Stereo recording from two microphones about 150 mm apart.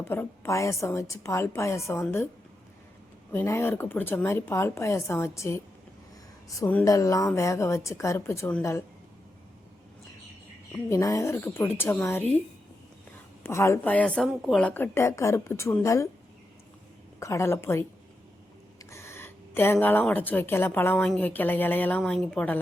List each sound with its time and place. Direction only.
0.0 s a woman's voice: 15° left (ahead or behind)
3.3 s a woman's voice: 15° left (ahead or behind)
6.8 s a woman's voice: 20° left (ahead or behind)
10.8 s a woman's voice: 20° left (ahead or behind)
13.4 s a woman's voice: 20° left (ahead or behind)
17.2 s a woman's voice: 20° left (ahead or behind)
18.9 s a woman's voice: 15° left (ahead or behind)